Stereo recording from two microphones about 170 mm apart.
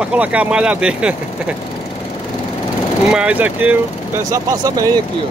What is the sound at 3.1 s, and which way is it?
Speech, 5° right (ahead or behind).